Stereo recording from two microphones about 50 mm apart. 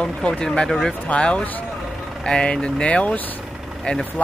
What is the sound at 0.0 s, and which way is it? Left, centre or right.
Speech, centre.